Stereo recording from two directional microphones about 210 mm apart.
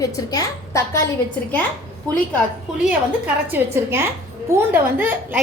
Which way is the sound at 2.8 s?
5° right (ahead or behind).